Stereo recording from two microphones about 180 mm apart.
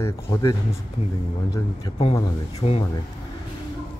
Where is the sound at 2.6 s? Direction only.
35° left (ahead or behind).